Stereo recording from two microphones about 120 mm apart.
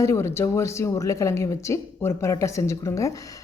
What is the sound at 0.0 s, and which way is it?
A woman's voice, 25° left (ahead or behind).